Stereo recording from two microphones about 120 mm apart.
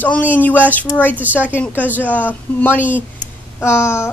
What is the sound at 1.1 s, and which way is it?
Speech, 15° right (ahead or behind).